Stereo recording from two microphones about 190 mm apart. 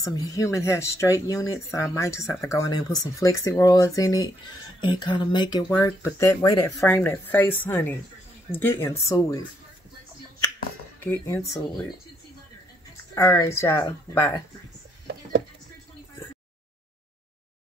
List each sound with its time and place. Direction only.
0.0 s speech: 20° left (ahead or behind)
11.0 s speech: 10° left (ahead or behind)
13.1 s speech: 15° left (ahead or behind)